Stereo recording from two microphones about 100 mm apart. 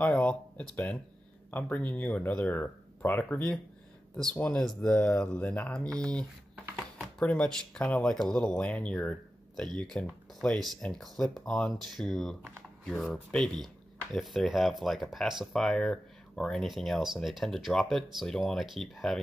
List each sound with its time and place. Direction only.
0.0 s speech: 10° left (ahead or behind)